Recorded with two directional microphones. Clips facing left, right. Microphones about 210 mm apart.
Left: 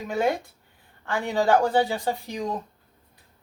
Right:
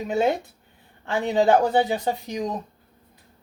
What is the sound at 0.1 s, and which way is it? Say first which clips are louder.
Speech: right 2 dB; 20° right (ahead or behind).